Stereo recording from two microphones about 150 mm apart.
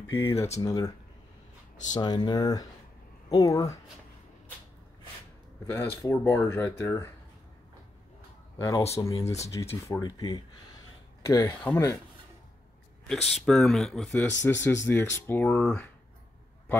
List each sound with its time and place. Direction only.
0.1 s speech: 15° left (ahead or behind)
5.7 s speech: 15° left (ahead or behind)
8.9 s speech: 20° left (ahead or behind)
13.3 s speech: centre (ahead or behind)
14.1 s speech: 15° left (ahead or behind)